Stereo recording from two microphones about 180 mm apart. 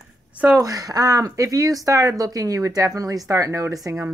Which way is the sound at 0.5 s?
20° right (ahead or behind).